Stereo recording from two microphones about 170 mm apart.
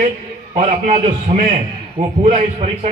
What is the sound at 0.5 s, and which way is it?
A man's voice, 40° right (ahead or behind).